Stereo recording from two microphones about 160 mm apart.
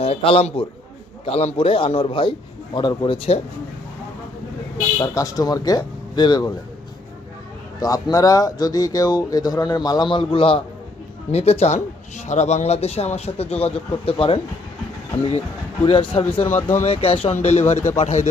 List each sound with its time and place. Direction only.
0.0 s a man's voice: 40° left (ahead or behind)
4.9 s speech: 20° left (ahead or behind)
7.8 s speech: 25° left (ahead or behind)
15.9 s speech: 35° left (ahead or behind)
16.6 s speech: 15° left (ahead or behind)
16.8 s speech: 35° left (ahead or behind)